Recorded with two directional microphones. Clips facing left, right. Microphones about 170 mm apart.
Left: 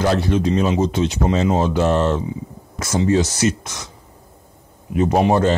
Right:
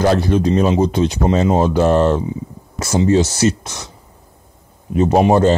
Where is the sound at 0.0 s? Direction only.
40° right (ahead or behind).